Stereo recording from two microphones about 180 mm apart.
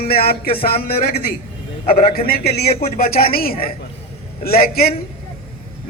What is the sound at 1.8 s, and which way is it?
A man's voice, 45° left (ahead or behind).